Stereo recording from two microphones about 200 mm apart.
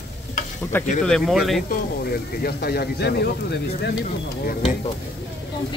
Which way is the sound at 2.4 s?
50° left (ahead or behind).